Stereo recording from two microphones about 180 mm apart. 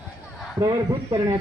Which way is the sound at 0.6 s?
20° right (ahead or behind).